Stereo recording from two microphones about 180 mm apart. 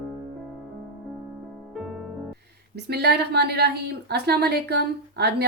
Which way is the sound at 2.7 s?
65° right (ahead or behind).